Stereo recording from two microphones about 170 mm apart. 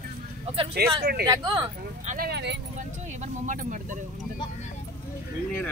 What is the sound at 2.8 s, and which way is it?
Speech, 45° right (ahead or behind).